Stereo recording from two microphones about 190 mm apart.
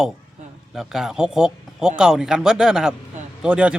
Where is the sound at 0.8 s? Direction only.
Centre (ahead or behind).